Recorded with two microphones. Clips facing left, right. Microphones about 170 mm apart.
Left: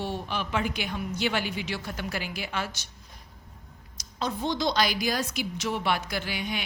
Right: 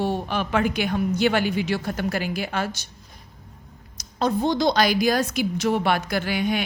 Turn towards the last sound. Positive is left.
turn(degrees=-50)  # may be behind; listen again after turning